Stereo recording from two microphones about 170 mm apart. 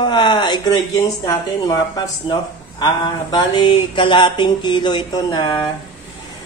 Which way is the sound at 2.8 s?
25° left (ahead or behind).